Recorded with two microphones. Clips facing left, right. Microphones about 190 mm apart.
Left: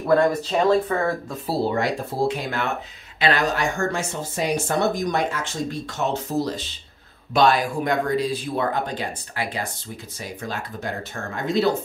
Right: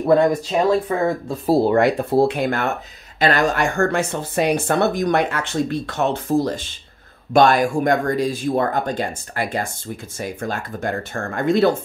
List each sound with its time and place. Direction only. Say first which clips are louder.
0.5 s speech: right 1 dB; 5° right (ahead or behind)
1.3 s speech: right 9 dB; 45° right (ahead or behind)
1.7 s speech: right 8 dB; 60° right (ahead or behind)